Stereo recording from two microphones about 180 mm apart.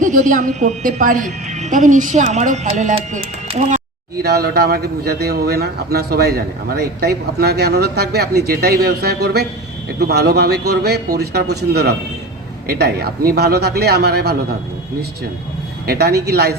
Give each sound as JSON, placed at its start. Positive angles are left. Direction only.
{"t": 0.0, "sound": "speech", "side_deg": -45}
{"t": 4.2, "sound": "a man's voice", "side_deg": -60}
{"t": 15.9, "sound": "a man's voice", "side_deg": -60}